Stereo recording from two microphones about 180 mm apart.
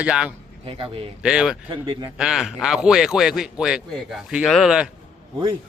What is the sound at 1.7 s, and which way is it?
Speech, 25° right (ahead or behind).